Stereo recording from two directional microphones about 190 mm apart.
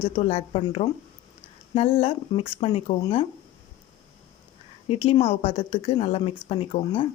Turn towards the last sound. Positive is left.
turn(degrees=30)  # may be behind; listen again after turning